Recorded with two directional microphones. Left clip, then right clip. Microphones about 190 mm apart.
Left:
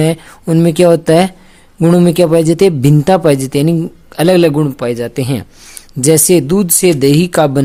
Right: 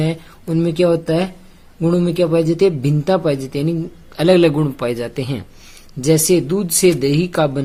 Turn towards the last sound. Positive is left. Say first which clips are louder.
# left 6 dB
turn(degrees=40)  # may be behind; listen again after turning